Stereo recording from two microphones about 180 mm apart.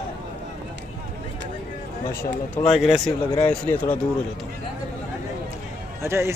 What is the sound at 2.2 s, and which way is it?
Speech, 35° left (ahead or behind).